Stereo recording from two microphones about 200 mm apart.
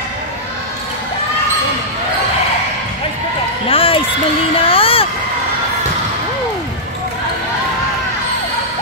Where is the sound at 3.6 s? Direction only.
25° left (ahead or behind).